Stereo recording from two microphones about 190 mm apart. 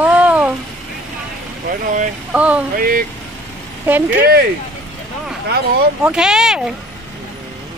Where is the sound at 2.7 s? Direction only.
45° right (ahead or behind).